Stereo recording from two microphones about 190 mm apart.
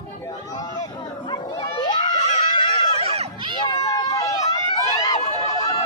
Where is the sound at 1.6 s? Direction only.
25° left (ahead or behind).